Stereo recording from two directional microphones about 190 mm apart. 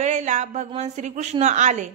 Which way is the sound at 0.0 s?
35° right (ahead or behind).